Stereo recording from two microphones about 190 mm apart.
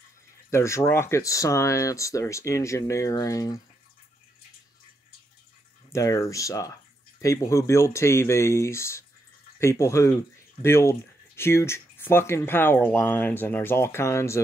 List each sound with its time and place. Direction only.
0.5 s speech: 15° left (ahead or behind)
5.9 s speech: 15° left (ahead or behind)